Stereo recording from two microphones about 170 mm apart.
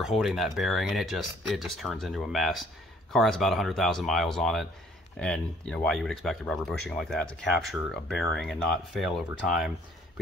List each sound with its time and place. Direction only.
0.0 s speech: centre (ahead or behind)